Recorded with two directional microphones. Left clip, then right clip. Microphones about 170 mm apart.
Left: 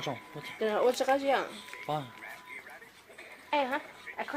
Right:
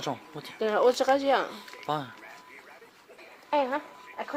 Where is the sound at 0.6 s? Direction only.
60° right (ahead or behind).